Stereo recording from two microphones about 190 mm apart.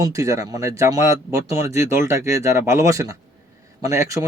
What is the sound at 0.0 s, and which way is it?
Speech, 15° right (ahead or behind).